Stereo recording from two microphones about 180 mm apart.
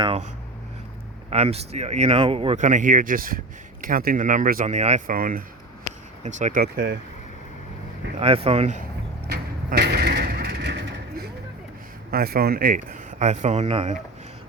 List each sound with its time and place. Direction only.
1.3 s speech: 35° right (ahead or behind); by 7.0 s 60° right (ahead or behind)
8.2 s speech: 35° right (ahead or behind)
9.2 s a sound: 60° right (ahead or behind)
12.1 s speech: 60° right (ahead or behind); by 13.9 s 35° right (ahead or behind)